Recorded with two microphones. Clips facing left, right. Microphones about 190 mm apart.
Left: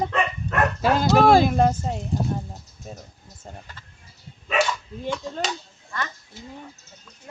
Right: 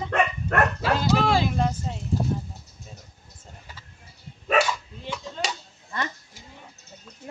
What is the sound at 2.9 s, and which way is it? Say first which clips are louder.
Speech: left 9 dB; 50° left (ahead or behind).